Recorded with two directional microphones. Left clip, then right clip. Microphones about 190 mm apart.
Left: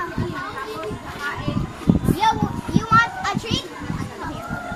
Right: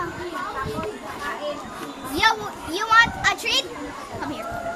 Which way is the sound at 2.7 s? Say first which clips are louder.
Right 1 dB; 55° right (ahead or behind).